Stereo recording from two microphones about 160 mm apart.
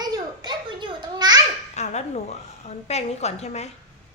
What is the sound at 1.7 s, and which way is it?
A woman's voice, 45° left (ahead or behind).